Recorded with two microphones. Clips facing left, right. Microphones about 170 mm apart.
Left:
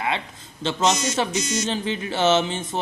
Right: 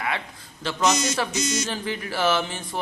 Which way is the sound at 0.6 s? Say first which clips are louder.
Left 1 dB; 25° left (ahead or behind).